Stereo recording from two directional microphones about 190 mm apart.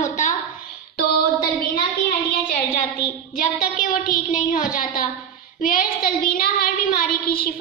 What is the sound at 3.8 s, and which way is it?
Child singing, 45° left (ahead or behind).